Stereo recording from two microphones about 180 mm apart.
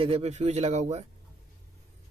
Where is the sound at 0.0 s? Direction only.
35° right (ahead or behind).